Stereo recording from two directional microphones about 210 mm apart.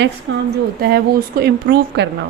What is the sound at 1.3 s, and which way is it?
Speech, 45° right (ahead or behind).